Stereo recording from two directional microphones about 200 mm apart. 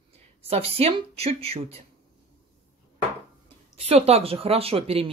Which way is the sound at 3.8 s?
30° right (ahead or behind).